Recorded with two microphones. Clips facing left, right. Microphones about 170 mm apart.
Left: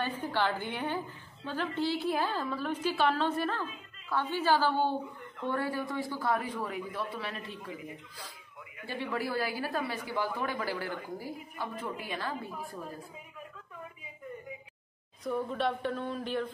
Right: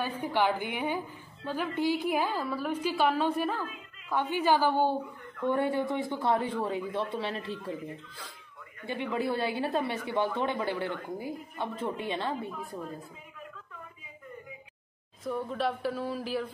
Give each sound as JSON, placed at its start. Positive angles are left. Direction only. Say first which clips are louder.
{"t": 0.2, "sound": "a woman's voice", "louder": "right 6 dB", "side_deg": -15}
{"t": 8.8, "sound": "speech", "louder": "right 3 dB", "side_deg": -20}
{"t": 15.2, "sound": "a sound", "louder": "even", "side_deg": 0}